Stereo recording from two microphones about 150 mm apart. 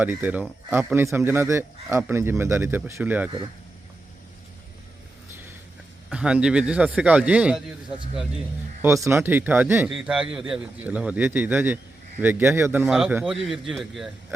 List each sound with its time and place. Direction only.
0.0 s speech: 10° right (ahead or behind)
6.1 s speech: 10° right (ahead or behind)
8.8 s a man's voice: 20° right (ahead or behind); by 14.3 s centre (ahead or behind)